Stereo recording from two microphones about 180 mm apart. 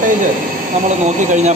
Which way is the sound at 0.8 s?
40° right (ahead or behind).